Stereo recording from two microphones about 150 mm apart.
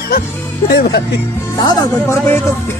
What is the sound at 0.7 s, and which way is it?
Music, 90° left.